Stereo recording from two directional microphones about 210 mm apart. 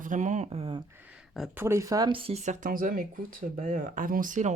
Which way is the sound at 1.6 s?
15° right (ahead or behind).